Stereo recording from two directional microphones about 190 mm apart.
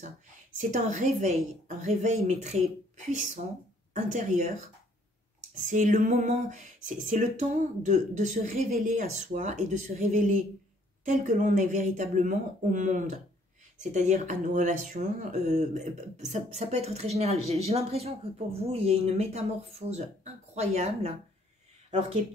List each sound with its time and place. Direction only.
0.6 s speech: 40° right (ahead or behind)
3.9 s speech: 40° right (ahead or behind)
5.7 s speech: 40° right (ahead or behind)